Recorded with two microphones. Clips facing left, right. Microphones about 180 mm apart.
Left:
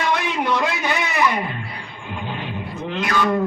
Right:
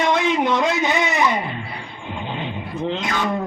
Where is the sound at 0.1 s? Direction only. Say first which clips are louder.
Right 3 dB; 20° right (ahead or behind).